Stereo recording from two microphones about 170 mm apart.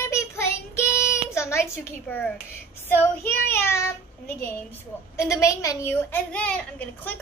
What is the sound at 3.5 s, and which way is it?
A woman's voice, 15° left (ahead or behind).